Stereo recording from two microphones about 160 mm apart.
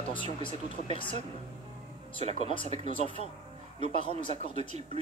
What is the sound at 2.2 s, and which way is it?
Speech, 45° right (ahead or behind).